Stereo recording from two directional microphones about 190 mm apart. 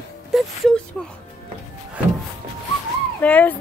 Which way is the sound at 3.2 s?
10° left (ahead or behind).